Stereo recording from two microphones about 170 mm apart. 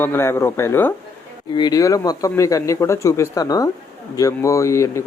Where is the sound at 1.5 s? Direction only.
25° left (ahead or behind).